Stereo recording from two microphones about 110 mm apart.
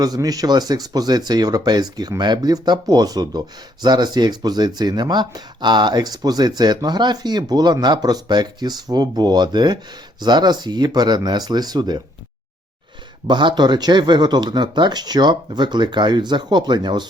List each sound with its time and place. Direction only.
0.0 s speech: 35° right (ahead or behind)
13.2 s speech: 45° right (ahead or behind)